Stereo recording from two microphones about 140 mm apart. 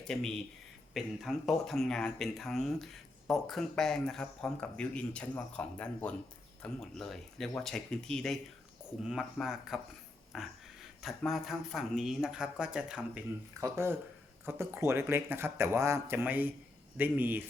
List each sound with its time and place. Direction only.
0.1 s speech: 5° left (ahead or behind)
13.6 s speech: 20° right (ahead or behind)